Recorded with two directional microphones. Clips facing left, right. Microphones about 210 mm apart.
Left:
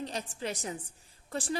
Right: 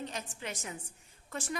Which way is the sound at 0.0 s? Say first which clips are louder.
Left 4 dB; 35° left (ahead or behind).